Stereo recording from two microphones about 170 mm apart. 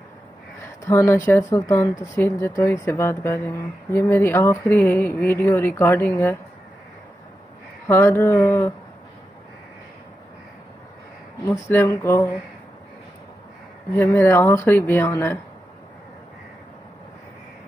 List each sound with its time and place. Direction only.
0.8 s speech: 15° left (ahead or behind)
7.9 s speech: 15° left (ahead or behind)
11.4 s speech: 15° left (ahead or behind)
13.9 s speech: 10° left (ahead or behind)